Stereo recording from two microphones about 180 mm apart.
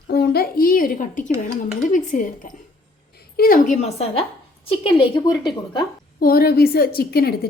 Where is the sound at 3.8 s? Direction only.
35° left (ahead or behind).